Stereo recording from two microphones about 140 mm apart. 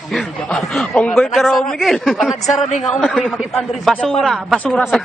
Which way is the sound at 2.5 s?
55° left (ahead or behind).